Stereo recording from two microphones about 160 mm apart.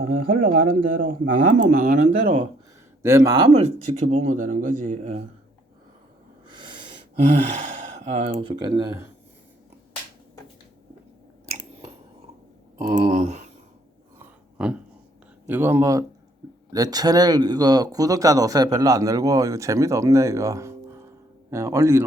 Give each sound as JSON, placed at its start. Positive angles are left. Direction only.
{"t": 0.0, "sound": "speech", "side_deg": -60}
{"t": 2.1, "sound": "speech", "side_deg": -45}
{"t": 3.0, "sound": "speech", "side_deg": -15}
{"t": 3.5, "sound": "speech", "side_deg": -40}
{"t": 6.5, "sound": "wheeze", "side_deg": -30}
{"t": 7.9, "sound": "speech", "side_deg": -45}
{"t": 8.4, "sound": "speech", "side_deg": -25}
{"t": 13.0, "sound": "speech", "side_deg": -50}
{"t": 14.2, "sound": "a sound", "side_deg": -5}
{"t": 15.4, "sound": "speech", "side_deg": -15}